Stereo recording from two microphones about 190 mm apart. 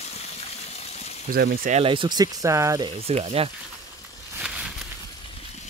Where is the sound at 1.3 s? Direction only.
55° right (ahead or behind).